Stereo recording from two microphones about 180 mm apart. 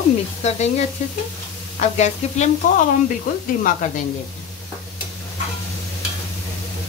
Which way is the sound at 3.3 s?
50° left (ahead or behind).